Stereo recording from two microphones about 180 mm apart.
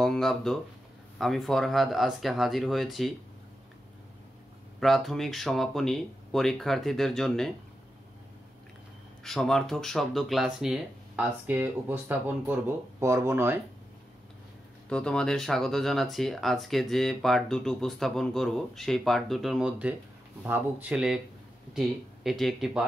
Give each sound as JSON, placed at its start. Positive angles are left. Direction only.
{"t": 0.0, "sound": "a sound", "side_deg": 0}
{"t": 1.1, "sound": "speech", "side_deg": 0}
{"t": 4.7, "sound": "speech", "side_deg": 0}
{"t": 9.2, "sound": "speech", "side_deg": 0}
{"t": 14.9, "sound": "speech", "side_deg": 5}